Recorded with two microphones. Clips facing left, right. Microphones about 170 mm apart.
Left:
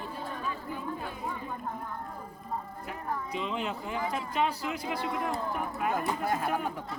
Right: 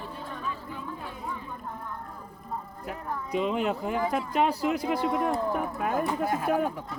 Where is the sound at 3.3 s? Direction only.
45° right (ahead or behind).